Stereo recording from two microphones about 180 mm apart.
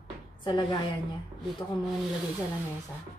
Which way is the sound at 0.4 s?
25° left (ahead or behind).